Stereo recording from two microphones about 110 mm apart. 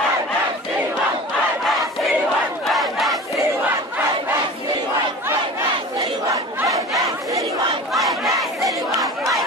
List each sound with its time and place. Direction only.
2.7 s battle cry: centre (ahead or behind)
5.9 s chatter: 30° right (ahead or behind)
7.9 s battle cry: centre (ahead or behind)